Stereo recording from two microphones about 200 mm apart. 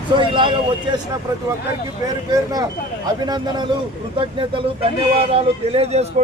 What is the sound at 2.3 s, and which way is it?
Speech, 20° right (ahead or behind).